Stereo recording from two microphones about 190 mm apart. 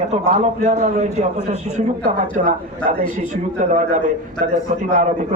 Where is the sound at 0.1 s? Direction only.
35° right (ahead or behind).